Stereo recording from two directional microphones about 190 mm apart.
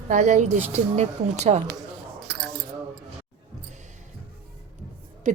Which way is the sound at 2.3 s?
60° right (ahead or behind).